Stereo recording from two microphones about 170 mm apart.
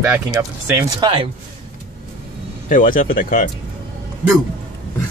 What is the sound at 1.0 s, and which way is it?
Speech, 30° right (ahead or behind).